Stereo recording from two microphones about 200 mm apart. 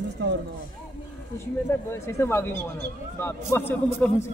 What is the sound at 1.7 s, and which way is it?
A man's voice, 10° left (ahead or behind).